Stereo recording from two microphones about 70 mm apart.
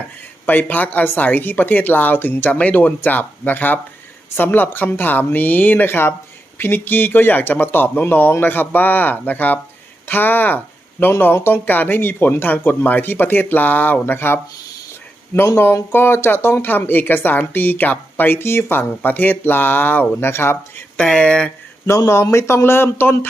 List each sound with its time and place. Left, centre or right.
0.4 s speech: left
15.5 s speech: left
20.9 s speech: centre
21.8 s speech: left